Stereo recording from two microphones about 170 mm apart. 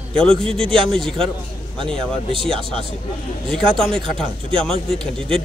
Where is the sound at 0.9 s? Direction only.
Centre (ahead or behind).